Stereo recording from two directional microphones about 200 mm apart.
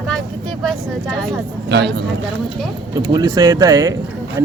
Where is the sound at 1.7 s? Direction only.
60° right (ahead or behind).